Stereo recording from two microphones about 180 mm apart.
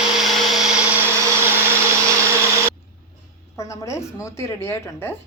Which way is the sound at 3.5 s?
15° left (ahead or behind).